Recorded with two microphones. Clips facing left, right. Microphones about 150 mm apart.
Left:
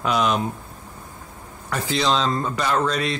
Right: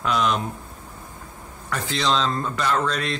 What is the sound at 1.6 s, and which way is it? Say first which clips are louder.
Speech: left 2 dB; 5° left (ahead or behind).